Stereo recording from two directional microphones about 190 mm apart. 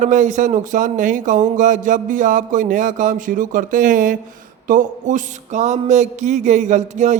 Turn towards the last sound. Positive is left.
turn(degrees=-40)  # may be behind; listen again after turning